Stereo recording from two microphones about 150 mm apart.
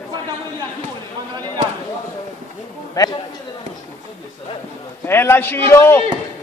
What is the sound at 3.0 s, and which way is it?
Speech, 25° left (ahead or behind).